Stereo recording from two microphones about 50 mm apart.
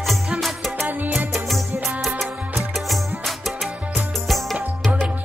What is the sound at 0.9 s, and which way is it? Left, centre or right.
Music, right.